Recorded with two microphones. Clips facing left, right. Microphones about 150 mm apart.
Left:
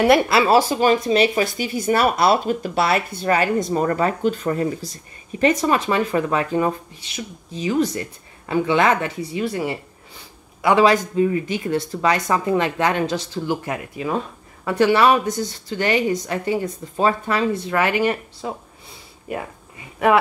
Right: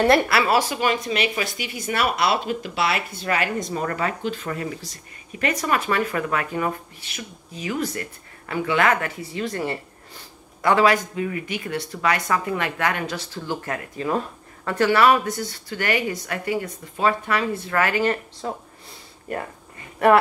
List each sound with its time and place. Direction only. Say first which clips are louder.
0.3 s speech: left 4 dB; 25° left (ahead or behind)
5.4 s speech: left 6 dB; 25° left (ahead or behind); by 14.8 s 5° left (ahead or behind)
14.8 s speech: left 2 dB; 20° left (ahead or behind)
17.6 s speech: even; 20° left (ahead or behind)
18.4 s speech: left 1 dB; 5° left (ahead or behind)